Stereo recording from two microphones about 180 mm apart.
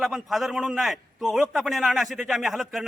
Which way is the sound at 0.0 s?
Centre (ahead or behind).